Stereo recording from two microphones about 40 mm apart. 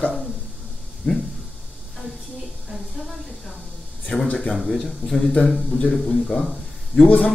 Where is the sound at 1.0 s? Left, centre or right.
Left.